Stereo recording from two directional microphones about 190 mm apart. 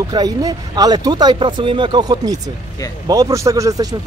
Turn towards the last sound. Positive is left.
turn(degrees=-20)  # may be behind; listen again after turning